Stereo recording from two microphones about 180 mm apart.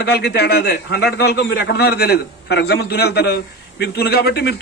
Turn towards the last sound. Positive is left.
turn(degrees=65)  # may be behind; listen again after turning